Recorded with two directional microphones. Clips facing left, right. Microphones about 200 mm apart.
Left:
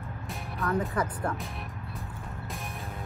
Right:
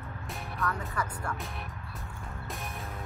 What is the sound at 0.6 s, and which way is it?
Speech, 30° left (ahead or behind).